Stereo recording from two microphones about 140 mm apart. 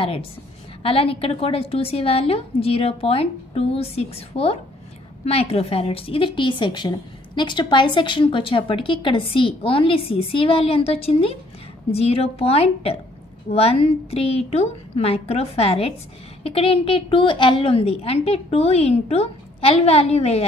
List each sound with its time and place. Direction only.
0.8 s a woman's voice: 40° left (ahead or behind)